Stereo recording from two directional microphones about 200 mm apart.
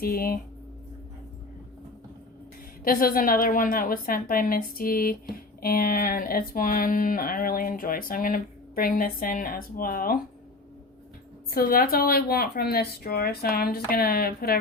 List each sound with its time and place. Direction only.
0.0 s speech: 45° left (ahead or behind)
2.8 s speech: 45° left (ahead or behind)
11.5 s speech: 45° left (ahead or behind)